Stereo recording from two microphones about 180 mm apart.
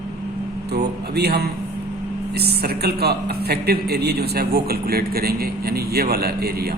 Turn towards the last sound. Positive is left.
turn(degrees=-60)  # may be behind; listen again after turning